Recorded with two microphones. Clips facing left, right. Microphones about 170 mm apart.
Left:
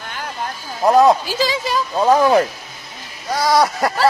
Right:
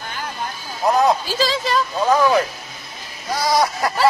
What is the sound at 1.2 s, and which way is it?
Speech, 15° left (ahead or behind).